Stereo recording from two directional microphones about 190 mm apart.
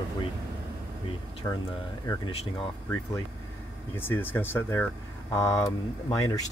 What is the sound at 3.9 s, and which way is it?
Speech, 10° left (ahead or behind).